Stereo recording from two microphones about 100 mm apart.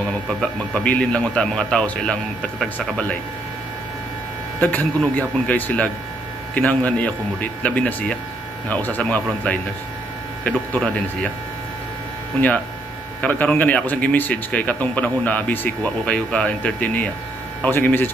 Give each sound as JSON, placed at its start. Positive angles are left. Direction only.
{"t": 0.3, "sound": "speech", "side_deg": 10}
{"t": 4.6, "sound": "speech", "side_deg": 15}
{"t": 13.2, "sound": "speech", "side_deg": 15}